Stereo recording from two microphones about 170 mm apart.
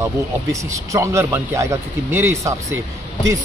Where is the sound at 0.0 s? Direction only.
20° right (ahead or behind).